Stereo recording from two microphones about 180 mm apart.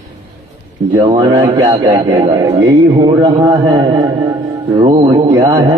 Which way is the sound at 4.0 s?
20° right (ahead or behind).